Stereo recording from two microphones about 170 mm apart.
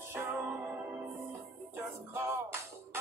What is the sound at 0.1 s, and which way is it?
Music, 15° right (ahead or behind).